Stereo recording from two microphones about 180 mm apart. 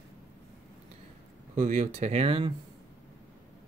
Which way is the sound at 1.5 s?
40° right (ahead or behind).